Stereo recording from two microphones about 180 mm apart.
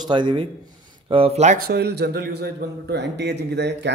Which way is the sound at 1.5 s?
60° right (ahead or behind).